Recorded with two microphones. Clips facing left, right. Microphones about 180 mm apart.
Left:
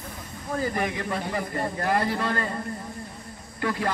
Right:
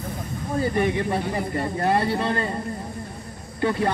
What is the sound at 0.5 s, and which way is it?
Speech, 25° right (ahead or behind).